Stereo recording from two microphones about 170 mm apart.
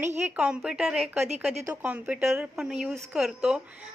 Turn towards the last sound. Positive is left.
turn(degrees=-5)  # may be behind; listen again after turning